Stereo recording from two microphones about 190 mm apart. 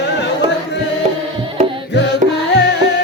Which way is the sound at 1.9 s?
65° left (ahead or behind).